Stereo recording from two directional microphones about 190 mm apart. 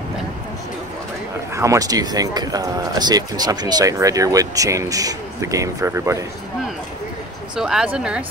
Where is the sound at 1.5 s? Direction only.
15° right (ahead or behind).